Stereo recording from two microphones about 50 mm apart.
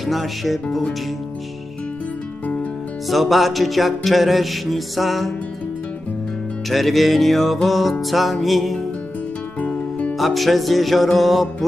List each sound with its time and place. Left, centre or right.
0.0 s music: centre
3.1 s music: centre
6.7 s music: centre
9.6 s music: left
10.1 s music: centre